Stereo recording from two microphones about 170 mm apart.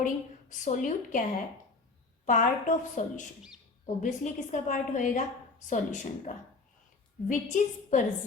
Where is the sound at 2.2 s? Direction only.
50° left (ahead or behind).